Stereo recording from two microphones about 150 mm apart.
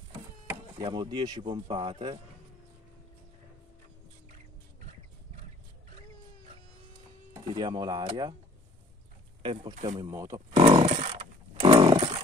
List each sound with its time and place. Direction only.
0.7 s speech: 30° right (ahead or behind)
7.4 s speech: 30° right (ahead or behind)
9.4 s speech: 30° right (ahead or behind)
10.0 s speech: 20° right (ahead or behind)
10.5 s chainsaw: 35° right (ahead or behind)
10.9 s chainsaw: 50° right (ahead or behind)
11.6 s chainsaw: 35° right (ahead or behind)